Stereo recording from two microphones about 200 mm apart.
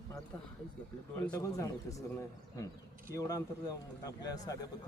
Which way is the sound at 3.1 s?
15° left (ahead or behind).